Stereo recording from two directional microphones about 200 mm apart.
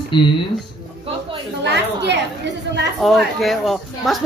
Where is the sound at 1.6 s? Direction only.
60° right (ahead or behind).